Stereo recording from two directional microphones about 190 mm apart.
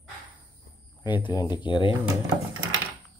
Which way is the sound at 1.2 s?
20° left (ahead or behind).